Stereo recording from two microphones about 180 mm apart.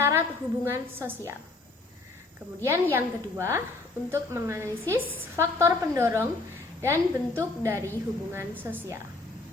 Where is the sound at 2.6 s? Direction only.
15° right (ahead or behind).